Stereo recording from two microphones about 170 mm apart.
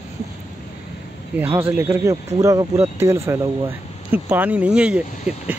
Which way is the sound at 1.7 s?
15° right (ahead or behind).